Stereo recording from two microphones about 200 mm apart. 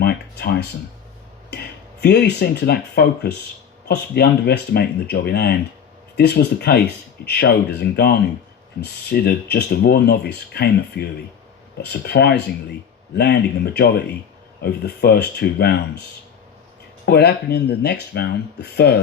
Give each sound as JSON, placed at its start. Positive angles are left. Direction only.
{"t": 0.0, "sound": "a sound", "side_deg": 55}
{"t": 1.5, "sound": "speech", "side_deg": 55}
{"t": 17.1, "sound": "speech", "side_deg": 55}